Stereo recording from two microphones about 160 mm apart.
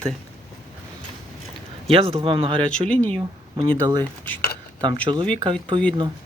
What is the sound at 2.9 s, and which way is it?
Speech, 10° left (ahead or behind).